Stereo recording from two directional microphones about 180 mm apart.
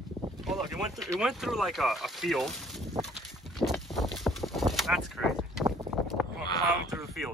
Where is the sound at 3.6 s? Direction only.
Centre (ahead or behind).